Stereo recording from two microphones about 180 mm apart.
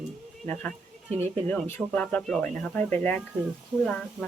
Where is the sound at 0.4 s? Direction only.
10° left (ahead or behind).